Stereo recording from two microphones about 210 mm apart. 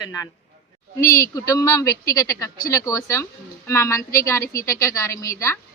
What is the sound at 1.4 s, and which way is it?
Speech, 15° left (ahead or behind).